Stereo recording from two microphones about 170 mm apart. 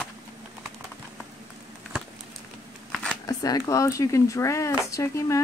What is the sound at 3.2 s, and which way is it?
Speech, 20° left (ahead or behind).